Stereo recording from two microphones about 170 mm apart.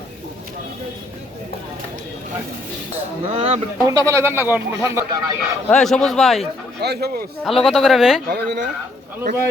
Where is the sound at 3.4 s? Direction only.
35° right (ahead or behind).